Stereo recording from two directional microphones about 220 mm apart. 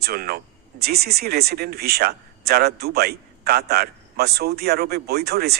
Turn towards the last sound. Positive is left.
turn(degrees=-45)  # may be behind; listen again after turning